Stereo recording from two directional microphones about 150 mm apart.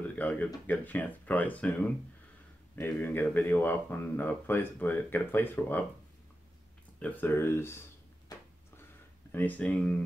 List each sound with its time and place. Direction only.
0.1 s speech: 10° left (ahead or behind)
7.0 s speech: 10° left (ahead or behind)
9.3 s speech: 10° left (ahead or behind)